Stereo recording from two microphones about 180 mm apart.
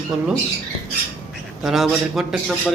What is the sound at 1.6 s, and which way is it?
Speech, centre (ahead or behind).